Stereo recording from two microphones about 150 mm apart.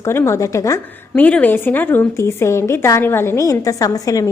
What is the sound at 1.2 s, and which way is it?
A woman's voice, 10° left (ahead or behind).